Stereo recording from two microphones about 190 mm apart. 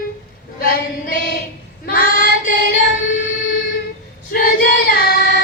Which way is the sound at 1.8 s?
50° left (ahead or behind).